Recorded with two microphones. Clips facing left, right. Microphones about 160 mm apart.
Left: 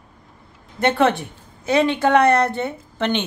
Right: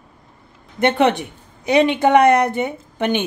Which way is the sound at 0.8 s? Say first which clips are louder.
Right 2 dB; 20° right (ahead or behind).